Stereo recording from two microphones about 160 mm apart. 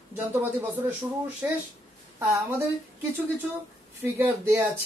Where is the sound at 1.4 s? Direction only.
15° right (ahead or behind).